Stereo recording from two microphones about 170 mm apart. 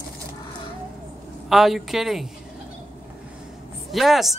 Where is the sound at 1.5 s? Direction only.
Centre (ahead or behind).